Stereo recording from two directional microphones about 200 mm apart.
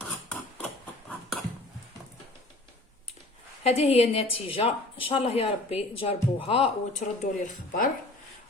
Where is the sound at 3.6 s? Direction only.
30° left (ahead or behind).